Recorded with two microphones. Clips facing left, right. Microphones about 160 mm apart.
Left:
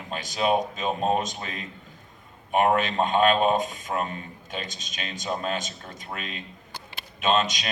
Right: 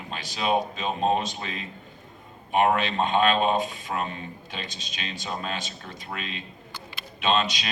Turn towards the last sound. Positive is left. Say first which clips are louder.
# left 1 dB
turn(degrees=45)  # may be behind; listen again after turning